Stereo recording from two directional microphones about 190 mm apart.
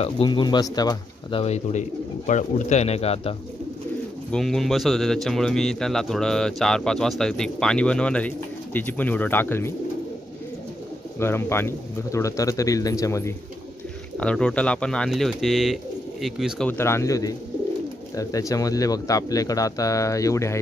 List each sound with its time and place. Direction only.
0.0 s speech: 25° left (ahead or behind)
1.4 s speech: 35° left (ahead or behind)
4.3 s a man's voice: centre (ahead or behind)
11.1 s a man's voice: 10° left (ahead or behind)
14.1 s a man's voice: 5° left (ahead or behind)